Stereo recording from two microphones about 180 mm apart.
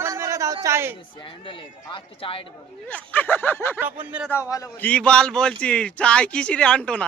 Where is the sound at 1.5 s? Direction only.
30° left (ahead or behind).